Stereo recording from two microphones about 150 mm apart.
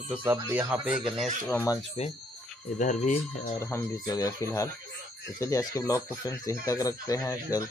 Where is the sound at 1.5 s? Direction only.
20° left (ahead or behind).